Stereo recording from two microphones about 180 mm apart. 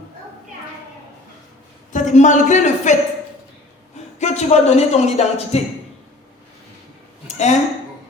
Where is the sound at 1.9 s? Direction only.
40° left (ahead or behind).